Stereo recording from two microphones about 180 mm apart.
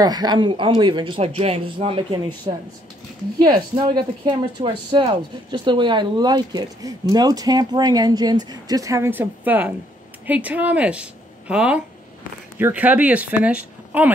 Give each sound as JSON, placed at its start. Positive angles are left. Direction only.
{"t": 0.0, "sound": "speech", "side_deg": -20}